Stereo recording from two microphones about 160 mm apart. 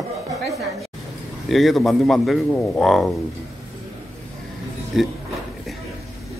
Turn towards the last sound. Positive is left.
turn(degrees=0)  # may be behind; listen again after turning